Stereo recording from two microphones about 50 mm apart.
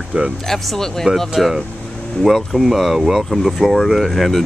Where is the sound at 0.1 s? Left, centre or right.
Right.